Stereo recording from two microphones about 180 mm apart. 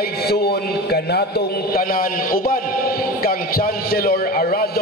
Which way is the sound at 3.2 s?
55° left (ahead or behind).